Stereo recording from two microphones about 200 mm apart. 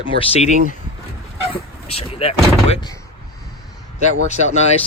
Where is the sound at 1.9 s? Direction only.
30° left (ahead or behind).